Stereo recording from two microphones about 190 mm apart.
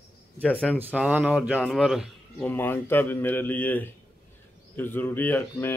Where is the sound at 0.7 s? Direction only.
5° right (ahead or behind).